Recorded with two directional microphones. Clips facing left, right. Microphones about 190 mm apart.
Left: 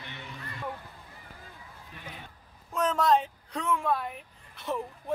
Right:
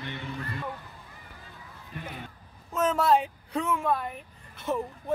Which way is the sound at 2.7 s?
5° right (ahead or behind).